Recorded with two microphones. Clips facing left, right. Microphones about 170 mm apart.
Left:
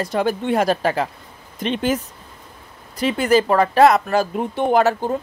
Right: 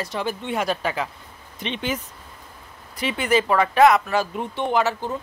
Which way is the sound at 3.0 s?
40° left (ahead or behind).